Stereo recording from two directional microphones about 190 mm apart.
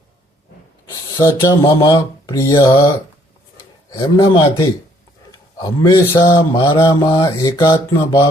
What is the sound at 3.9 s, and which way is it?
Mantra, 25° left (ahead or behind).